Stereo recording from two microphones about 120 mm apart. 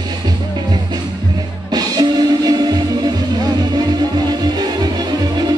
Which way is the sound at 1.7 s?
35° right (ahead or behind).